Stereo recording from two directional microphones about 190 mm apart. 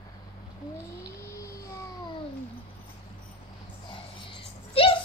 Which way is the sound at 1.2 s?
15° left (ahead or behind).